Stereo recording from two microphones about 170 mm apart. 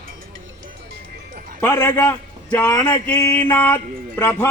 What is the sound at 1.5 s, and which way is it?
A man's voice, 15° left (ahead or behind).